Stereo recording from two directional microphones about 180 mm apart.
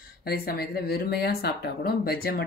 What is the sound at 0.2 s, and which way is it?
Speech, 60° left (ahead or behind).